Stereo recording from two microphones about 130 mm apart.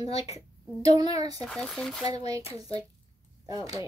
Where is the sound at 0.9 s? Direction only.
30° right (ahead or behind).